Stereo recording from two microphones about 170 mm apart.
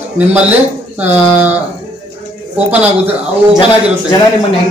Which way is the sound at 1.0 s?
10° right (ahead or behind).